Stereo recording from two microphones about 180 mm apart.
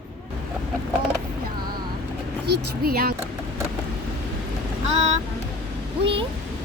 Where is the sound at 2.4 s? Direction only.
60° right (ahead or behind).